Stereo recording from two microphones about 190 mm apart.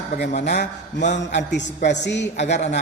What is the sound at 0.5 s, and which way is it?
A man's voice, 65° left (ahead or behind).